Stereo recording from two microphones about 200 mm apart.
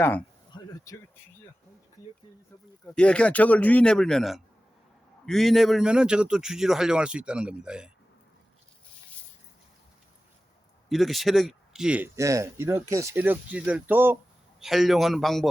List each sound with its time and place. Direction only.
0.0 s speech: 10° left (ahead or behind)
0.5 s a sound: 20° left (ahead or behind)
2.8 s a man's voice: 5° left (ahead or behind)
10.8 s a man's voice: centre (ahead or behind)